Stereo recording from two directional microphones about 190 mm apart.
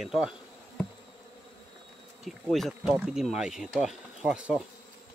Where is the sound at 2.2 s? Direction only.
Centre (ahead or behind).